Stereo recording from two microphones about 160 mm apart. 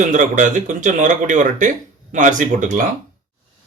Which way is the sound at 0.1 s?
55° right (ahead or behind).